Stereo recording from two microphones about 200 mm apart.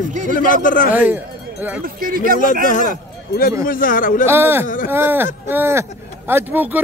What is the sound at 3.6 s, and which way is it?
Speech, 45° left (ahead or behind).